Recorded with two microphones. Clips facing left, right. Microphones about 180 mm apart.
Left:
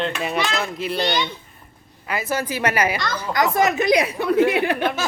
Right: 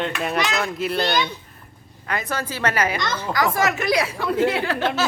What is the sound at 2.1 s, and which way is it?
A woman's voice, 5° left (ahead or behind).